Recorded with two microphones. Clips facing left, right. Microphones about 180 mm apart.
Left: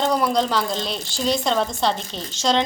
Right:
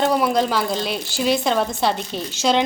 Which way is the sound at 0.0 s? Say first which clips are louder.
Right 2 dB; 5° right (ahead or behind).